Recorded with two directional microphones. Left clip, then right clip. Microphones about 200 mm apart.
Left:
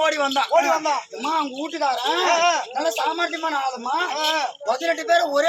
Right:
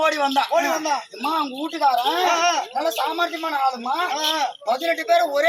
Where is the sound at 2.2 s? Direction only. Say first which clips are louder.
Left 3 dB; centre (ahead or behind).